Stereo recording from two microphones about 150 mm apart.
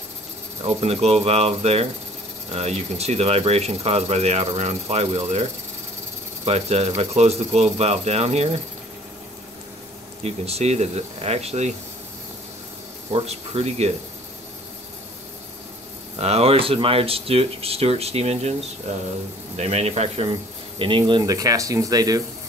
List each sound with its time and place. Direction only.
0.7 s speech: 45° right (ahead or behind)
10.2 s speech: 45° right (ahead or behind)
13.1 s speech: 45° right (ahead or behind)
16.2 s speech: 45° right (ahead or behind); by 22.2 s 25° right (ahead or behind)